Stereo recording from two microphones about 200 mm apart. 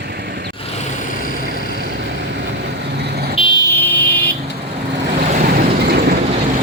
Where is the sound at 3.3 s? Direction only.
25° left (ahead or behind).